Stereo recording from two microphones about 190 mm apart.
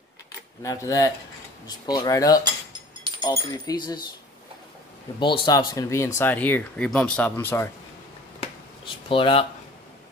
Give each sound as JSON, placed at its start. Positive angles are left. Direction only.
{"t": 0.6, "sound": "speech", "side_deg": 15}
{"t": 5.2, "sound": "speech", "side_deg": 25}
{"t": 9.1, "sound": "speech", "side_deg": 30}